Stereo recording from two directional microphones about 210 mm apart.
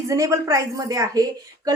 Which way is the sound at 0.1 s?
15° right (ahead or behind).